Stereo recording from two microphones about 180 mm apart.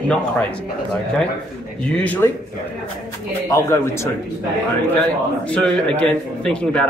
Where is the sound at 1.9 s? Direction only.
10° left (ahead or behind).